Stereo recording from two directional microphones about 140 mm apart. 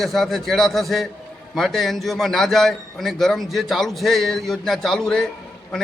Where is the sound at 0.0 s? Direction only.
Centre (ahead or behind).